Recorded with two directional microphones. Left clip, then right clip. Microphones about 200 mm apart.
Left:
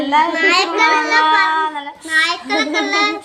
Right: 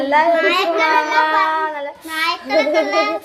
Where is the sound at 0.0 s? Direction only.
20° right (ahead or behind).